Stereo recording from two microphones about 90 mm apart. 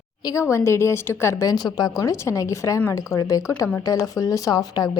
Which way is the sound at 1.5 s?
50° left (ahead or behind).